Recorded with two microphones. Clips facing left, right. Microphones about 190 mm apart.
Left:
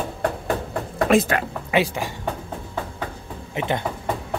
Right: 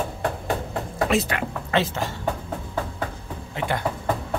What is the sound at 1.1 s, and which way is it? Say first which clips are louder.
Speech: left 6 dB; 50° left (ahead or behind).